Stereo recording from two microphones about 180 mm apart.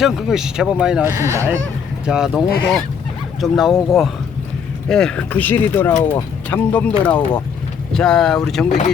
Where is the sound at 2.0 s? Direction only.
5° right (ahead or behind).